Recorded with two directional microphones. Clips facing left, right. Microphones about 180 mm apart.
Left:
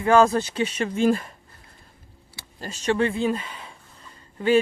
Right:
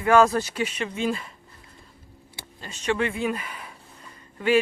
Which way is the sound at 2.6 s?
40° left (ahead or behind).